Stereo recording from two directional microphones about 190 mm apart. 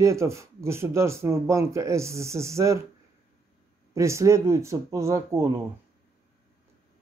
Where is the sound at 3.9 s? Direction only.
15° right (ahead or behind).